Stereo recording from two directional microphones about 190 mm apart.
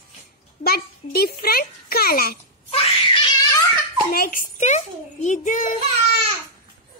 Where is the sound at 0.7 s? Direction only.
55° left (ahead or behind).